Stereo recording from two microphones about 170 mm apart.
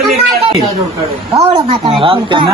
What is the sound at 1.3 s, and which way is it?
A woman's voice, 35° right (ahead or behind).